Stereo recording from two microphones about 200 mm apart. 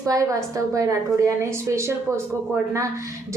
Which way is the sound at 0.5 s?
15° right (ahead or behind).